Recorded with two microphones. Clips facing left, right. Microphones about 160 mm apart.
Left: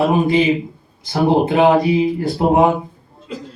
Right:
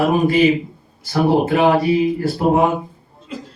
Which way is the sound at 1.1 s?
20° left (ahead or behind).